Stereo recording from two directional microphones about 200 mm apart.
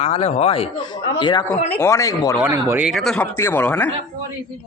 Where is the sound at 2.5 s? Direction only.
15° right (ahead or behind).